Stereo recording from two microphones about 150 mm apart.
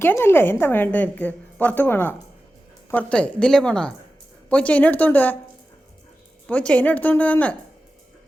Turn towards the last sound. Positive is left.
turn(degrees=10)  # may be behind; listen again after turning